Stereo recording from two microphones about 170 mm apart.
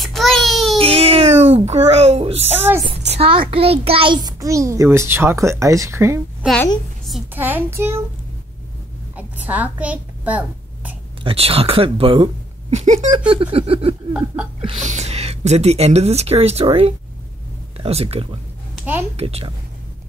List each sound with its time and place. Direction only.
0.0 s a sound: centre (ahead or behind)
0.7 s a sound: 35° right (ahead or behind)
2.5 s a child's voice: 10° right (ahead or behind)
3.1 s a child's voice: 35° right (ahead or behind); by 6.2 s 15° right (ahead or behind)
7.3 s a child's voice: 10° right (ahead or behind)
9.1 s a sound: 10° right (ahead or behind)
11.2 s speech: 35° right (ahead or behind)
13.3 s speech: 30° right (ahead or behind)
14.1 s a child's voice: 5° right (ahead or behind)
14.6 s gasp: 30° right (ahead or behind)
14.9 s speech: 40° right (ahead or behind)